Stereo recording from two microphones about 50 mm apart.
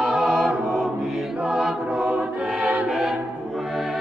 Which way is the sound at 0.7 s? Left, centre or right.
Centre.